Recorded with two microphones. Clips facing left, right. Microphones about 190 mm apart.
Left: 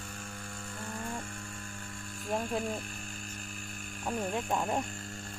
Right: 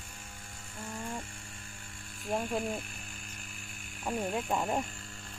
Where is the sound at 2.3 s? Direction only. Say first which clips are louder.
Even; centre (ahead or behind).